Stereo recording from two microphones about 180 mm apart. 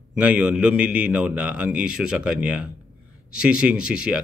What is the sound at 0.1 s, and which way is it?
A man's voice, 5° right (ahead or behind).